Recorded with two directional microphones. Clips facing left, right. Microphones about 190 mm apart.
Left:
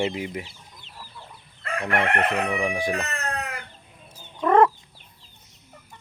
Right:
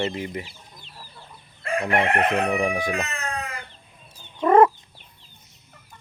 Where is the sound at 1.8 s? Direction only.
10° right (ahead or behind).